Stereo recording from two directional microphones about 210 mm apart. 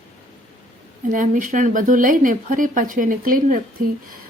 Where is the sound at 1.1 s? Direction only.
40° right (ahead or behind).